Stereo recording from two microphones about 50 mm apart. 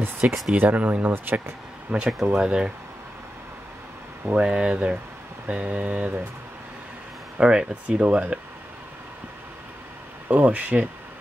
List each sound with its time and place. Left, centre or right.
0.2 s speech: centre
0.6 s speech: right
2.3 s speech: centre
4.4 s a sound: centre
7.3 s speech: centre
7.9 s a sound: right
10.2 s speech: right